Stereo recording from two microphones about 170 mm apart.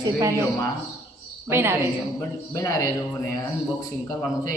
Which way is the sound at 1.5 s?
15° right (ahead or behind).